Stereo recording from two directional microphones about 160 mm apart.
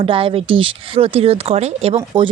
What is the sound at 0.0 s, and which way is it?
Speech, 35° right (ahead or behind).